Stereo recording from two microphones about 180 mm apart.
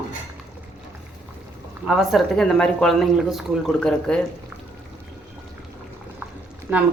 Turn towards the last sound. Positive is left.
turn(degrees=-15)  # may be behind; listen again after turning